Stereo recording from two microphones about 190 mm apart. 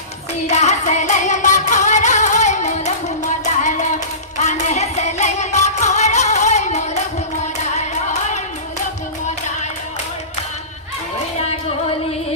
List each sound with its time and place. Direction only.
0.4 s music: 35° left (ahead or behind)
11.3 s music: 35° left (ahead or behind)